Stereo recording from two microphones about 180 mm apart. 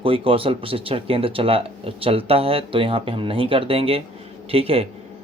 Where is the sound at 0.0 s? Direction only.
30° right (ahead or behind).